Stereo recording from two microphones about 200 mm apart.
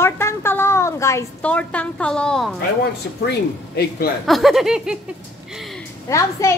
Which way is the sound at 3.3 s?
50° left (ahead or behind).